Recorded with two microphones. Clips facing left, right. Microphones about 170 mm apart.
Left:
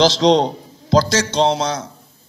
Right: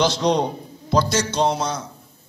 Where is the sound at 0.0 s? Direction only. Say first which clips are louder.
Left 6 dB; 90° left.